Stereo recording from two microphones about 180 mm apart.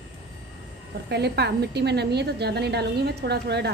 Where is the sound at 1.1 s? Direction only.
65° right (ahead or behind).